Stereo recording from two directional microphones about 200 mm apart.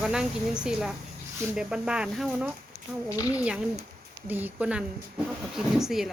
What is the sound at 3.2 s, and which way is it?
Speech, 15° left (ahead or behind).